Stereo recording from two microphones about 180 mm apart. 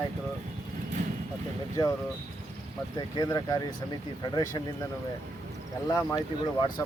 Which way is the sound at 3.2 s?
20° left (ahead or behind).